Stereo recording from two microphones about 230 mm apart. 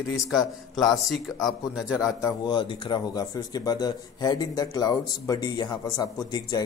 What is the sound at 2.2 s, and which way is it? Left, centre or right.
Speech, centre.